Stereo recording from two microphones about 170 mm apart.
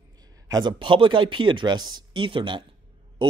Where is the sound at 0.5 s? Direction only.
25° right (ahead or behind).